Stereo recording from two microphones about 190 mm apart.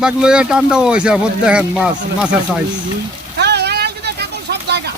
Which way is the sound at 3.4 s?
60° right (ahead or behind).